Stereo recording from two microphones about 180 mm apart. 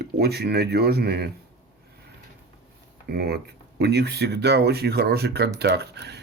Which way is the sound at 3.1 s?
65° right (ahead or behind).